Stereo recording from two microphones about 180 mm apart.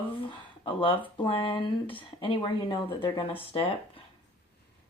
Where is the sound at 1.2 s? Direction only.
30° left (ahead or behind).